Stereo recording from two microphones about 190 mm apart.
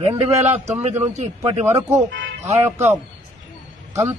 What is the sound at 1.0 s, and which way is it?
Speech, 35° right (ahead or behind).